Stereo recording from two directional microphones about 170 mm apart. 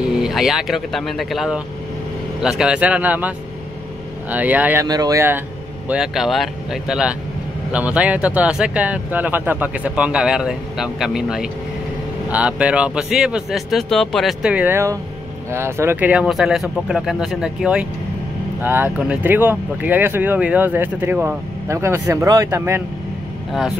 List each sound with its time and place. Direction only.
0.0 s speech: centre (ahead or behind)
4.8 s speech: 20° right (ahead or behind)
5.9 s speech: 5° right (ahead or behind)